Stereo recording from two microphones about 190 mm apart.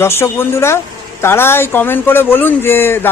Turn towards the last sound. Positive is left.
turn(degrees=10)  # may be behind; listen again after turning